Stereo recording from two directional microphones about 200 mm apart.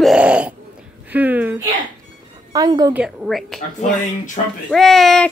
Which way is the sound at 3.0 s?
5° right (ahead or behind).